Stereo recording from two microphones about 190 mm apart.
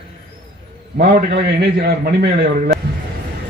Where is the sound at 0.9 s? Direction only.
50° right (ahead or behind).